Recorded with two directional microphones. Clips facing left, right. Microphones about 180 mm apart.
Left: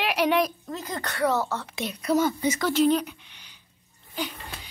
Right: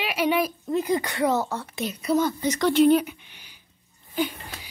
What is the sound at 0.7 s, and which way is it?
Speech, 15° right (ahead or behind).